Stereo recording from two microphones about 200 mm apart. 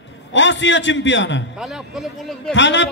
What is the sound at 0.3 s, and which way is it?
A man's voice, 65° left (ahead or behind).